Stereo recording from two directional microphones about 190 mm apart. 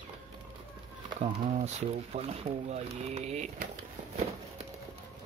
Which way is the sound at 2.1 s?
35° right (ahead or behind).